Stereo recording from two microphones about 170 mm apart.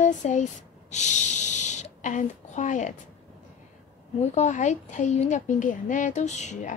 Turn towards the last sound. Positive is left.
turn(degrees=45)  # may be behind; listen again after turning